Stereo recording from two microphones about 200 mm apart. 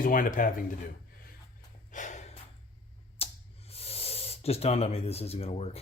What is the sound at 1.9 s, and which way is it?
Snort, 35° left (ahead or behind).